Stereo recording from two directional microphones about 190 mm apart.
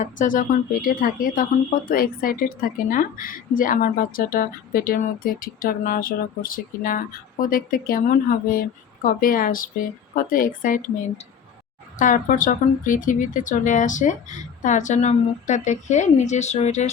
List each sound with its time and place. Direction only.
0.0 s a woman's voice: 45° left (ahead or behind)
11.9 s speech: 45° left (ahead or behind)